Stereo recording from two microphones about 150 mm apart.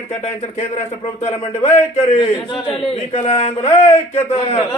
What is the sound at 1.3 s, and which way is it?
Speech, 45° left (ahead or behind).